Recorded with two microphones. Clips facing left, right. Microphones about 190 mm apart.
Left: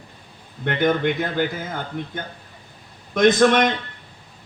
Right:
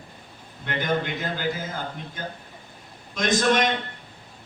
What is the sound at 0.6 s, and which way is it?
A man's voice, 55° left (ahead or behind).